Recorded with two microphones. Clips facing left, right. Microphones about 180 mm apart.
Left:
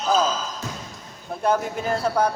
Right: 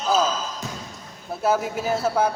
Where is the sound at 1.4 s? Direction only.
5° right (ahead or behind).